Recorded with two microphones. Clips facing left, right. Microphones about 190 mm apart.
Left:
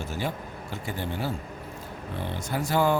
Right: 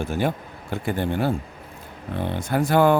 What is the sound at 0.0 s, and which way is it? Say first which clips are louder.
Speech: right 7 dB; 55° right (ahead or behind).